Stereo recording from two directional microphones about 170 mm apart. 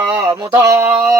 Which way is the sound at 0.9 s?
5° right (ahead or behind).